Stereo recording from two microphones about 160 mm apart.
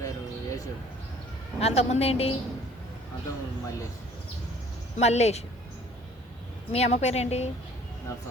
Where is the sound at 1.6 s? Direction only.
40° left (ahead or behind).